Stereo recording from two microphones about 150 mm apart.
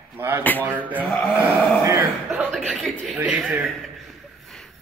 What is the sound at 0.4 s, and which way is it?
Speech, 10° left (ahead or behind).